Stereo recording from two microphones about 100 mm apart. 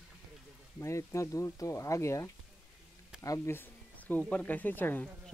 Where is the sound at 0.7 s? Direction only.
30° left (ahead or behind).